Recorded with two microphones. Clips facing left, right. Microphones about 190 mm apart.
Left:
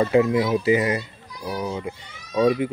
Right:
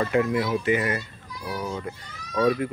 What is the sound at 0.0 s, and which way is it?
A child's voice, 20° left (ahead or behind).